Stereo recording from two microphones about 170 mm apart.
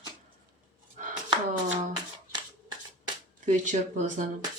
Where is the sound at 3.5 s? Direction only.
45° right (ahead or behind).